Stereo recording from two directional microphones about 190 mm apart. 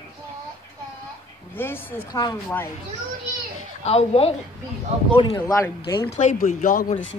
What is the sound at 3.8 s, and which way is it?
Speech, 30° left (ahead or behind).